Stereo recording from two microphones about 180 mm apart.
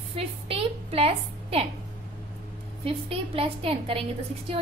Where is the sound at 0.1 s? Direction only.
30° right (ahead or behind).